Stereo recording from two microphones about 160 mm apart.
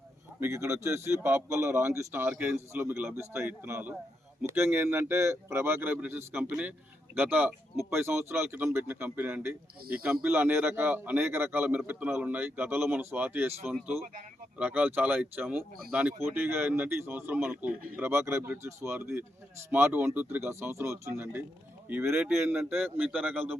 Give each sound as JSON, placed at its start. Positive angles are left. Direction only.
{"t": 0.3, "sound": "speech", "side_deg": -15}